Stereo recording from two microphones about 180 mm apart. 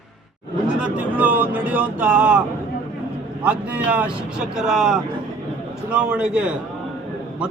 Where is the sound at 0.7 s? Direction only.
5° right (ahead or behind).